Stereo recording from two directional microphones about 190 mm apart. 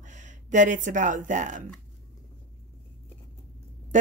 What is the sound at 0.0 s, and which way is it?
Speech, 40° right (ahead or behind).